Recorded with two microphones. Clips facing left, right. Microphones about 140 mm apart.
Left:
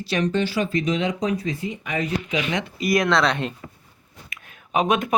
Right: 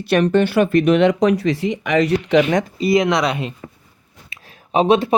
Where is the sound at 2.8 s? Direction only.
20° right (ahead or behind).